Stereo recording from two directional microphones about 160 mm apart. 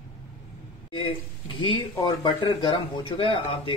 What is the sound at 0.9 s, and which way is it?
Speech, 30° left (ahead or behind).